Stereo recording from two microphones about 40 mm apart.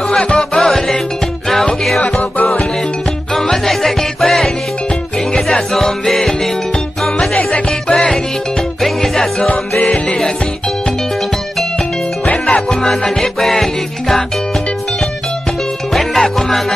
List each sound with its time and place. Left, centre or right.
0.4 s music: centre
3.3 s music: centre
5.7 s music: centre
7.3 s music: left
8.8 s music: centre
9.5 s music: left
12.3 s music: left
12.8 s music: centre
15.9 s music: centre